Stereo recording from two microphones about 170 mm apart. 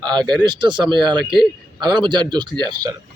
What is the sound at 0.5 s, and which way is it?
Speech, 25° right (ahead or behind).